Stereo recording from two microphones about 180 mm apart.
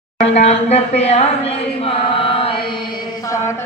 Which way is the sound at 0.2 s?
35° left (ahead or behind).